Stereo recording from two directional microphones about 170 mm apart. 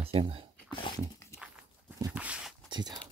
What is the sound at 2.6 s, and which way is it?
Speech, 25° right (ahead or behind).